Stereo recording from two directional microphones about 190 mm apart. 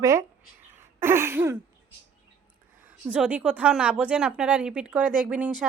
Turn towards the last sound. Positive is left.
turn(degrees=-5)  # may be behind; listen again after turning